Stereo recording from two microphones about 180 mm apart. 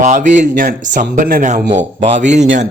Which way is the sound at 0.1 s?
45° right (ahead or behind).